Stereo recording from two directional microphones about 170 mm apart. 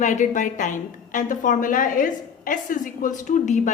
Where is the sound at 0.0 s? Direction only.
45° left (ahead or behind).